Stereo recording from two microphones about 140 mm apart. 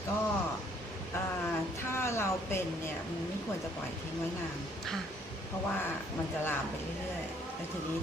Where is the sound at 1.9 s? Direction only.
20° left (ahead or behind).